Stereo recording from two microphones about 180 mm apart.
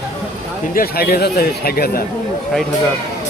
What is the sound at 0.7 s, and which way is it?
Speech, 60° left (ahead or behind).